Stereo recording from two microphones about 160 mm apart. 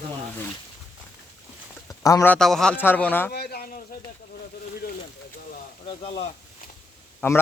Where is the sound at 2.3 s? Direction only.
5° left (ahead or behind).